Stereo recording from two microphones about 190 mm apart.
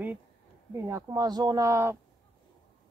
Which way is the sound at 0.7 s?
15° right (ahead or behind).